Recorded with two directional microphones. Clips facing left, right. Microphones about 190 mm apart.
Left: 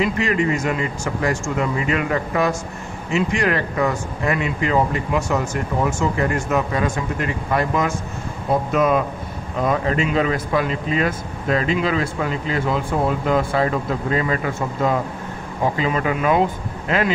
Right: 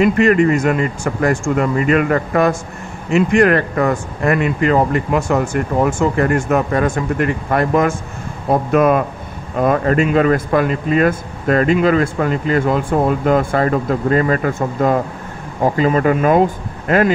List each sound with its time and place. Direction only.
0.0 s speech: 55° right (ahead or behind)